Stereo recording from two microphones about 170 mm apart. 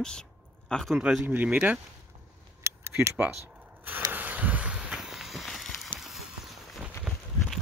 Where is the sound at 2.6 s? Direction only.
15° right (ahead or behind).